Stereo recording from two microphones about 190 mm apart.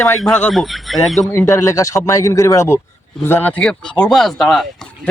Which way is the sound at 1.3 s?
15° left (ahead or behind).